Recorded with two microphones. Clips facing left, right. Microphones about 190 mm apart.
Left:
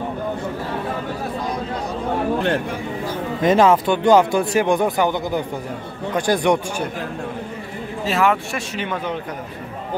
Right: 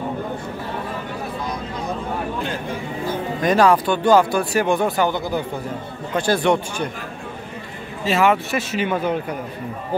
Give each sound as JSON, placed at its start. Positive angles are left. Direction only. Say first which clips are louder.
{"t": 3.3, "sound": "speech", "louder": "left 2 dB", "side_deg": 20}
{"t": 8.0, "sound": "speech", "louder": "right 1 dB", "side_deg": 0}